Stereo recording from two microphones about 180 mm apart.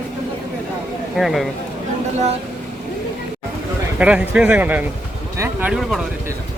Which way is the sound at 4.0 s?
5° right (ahead or behind).